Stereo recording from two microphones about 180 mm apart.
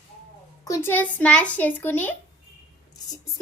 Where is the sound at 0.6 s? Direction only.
15° left (ahead or behind).